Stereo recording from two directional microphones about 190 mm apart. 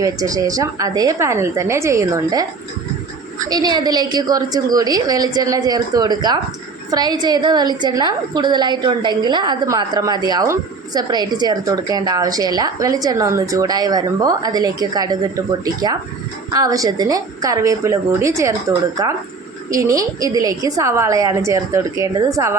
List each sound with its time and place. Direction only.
0.0 s a woman's voice: 20° right (ahead or behind)
3.5 s a woman's voice: 20° right (ahead or behind)
19.7 s a woman's voice: 15° right (ahead or behind)